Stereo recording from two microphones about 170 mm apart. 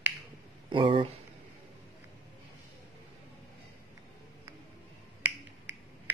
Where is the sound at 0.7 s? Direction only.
30° right (ahead or behind).